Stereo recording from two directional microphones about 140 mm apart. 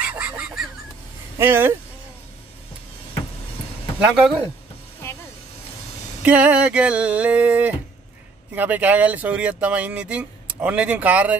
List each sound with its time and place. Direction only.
0.0 s goose: 10° right (ahead or behind)
1.4 s speech: 15° right (ahead or behind)
4.0 s speech: 5° right (ahead or behind)
6.2 s speech: 10° right (ahead or behind)